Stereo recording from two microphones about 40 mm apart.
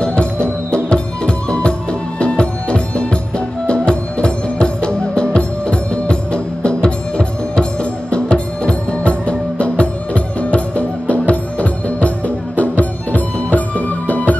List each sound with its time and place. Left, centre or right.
0.0 s music: left